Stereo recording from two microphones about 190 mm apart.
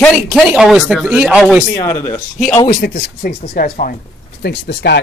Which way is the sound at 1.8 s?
15° left (ahead or behind).